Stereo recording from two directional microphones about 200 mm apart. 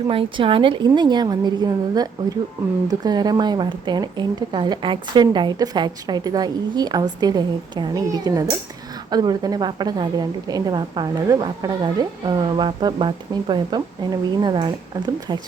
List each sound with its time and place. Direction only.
0.1 s a woman's voice: 25° right (ahead or behind)